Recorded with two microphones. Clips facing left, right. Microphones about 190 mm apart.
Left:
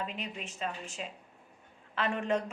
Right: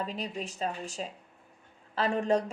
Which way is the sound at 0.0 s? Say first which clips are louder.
Right 4 dB; 35° right (ahead or behind).